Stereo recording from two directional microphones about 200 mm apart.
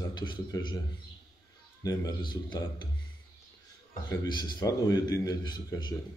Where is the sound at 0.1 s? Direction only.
20° left (ahead or behind).